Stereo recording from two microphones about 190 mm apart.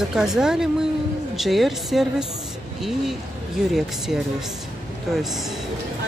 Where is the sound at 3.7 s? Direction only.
Centre (ahead or behind).